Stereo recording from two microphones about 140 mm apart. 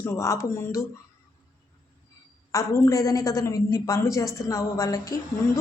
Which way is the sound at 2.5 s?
20° left (ahead or behind).